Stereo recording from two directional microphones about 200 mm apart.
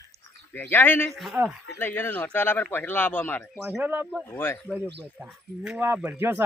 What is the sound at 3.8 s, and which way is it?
Speech, 10° right (ahead or behind).